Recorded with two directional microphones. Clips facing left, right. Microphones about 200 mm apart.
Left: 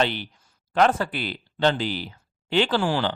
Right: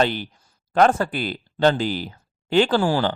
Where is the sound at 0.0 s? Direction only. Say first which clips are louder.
Right 3 dB; 45° right (ahead or behind).